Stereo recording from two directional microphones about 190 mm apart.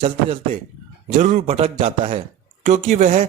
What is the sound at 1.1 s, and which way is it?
Speech, 40° right (ahead or behind).